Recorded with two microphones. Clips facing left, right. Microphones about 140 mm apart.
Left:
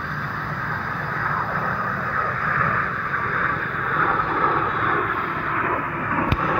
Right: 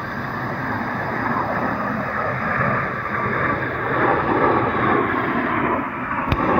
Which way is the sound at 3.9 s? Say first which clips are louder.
Right 6 dB; 60° right (ahead or behind).